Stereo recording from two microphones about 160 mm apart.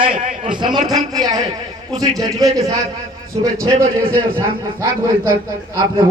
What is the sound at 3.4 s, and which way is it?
Speech, 35° right (ahead or behind).